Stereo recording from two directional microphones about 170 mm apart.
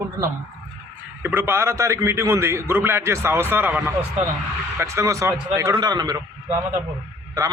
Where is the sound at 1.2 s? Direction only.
10° right (ahead or behind).